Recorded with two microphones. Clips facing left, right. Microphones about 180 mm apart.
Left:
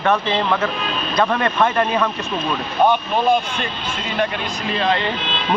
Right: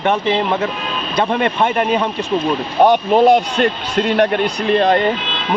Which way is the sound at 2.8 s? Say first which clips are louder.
Right 6 dB; 65° right (ahead or behind).